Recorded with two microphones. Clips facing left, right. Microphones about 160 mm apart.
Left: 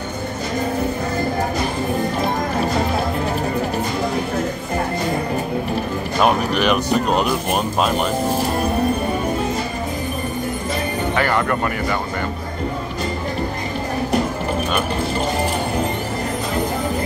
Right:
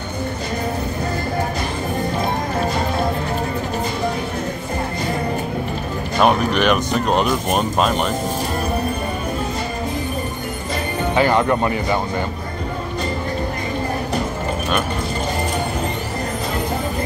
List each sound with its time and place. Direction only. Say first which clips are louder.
6.1 s speech: right 2 dB; centre (ahead or behind)
11.1 s speech: right 4 dB; 20° right (ahead or behind)